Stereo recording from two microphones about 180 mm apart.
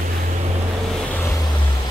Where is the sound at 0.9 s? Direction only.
10° left (ahead or behind).